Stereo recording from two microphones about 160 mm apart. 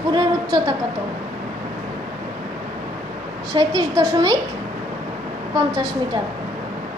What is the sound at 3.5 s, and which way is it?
Speech, 20° right (ahead or behind).